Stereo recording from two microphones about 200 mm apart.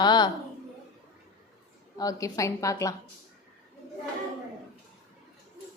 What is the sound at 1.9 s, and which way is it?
A woman's voice, 15° left (ahead or behind).